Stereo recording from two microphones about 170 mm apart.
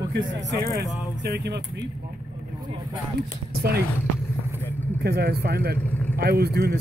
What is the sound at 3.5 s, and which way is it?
Speech, 70° right (ahead or behind).